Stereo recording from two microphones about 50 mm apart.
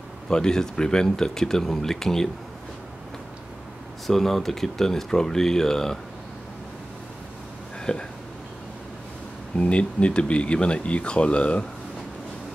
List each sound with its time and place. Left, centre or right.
0.3 s speech: centre
4.1 s speech: centre
7.8 s speech: centre
9.6 s speech: left